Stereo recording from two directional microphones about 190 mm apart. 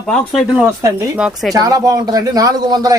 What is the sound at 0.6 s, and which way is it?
Speech, 15° right (ahead or behind).